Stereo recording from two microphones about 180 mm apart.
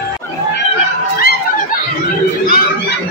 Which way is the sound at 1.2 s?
55° left (ahead or behind).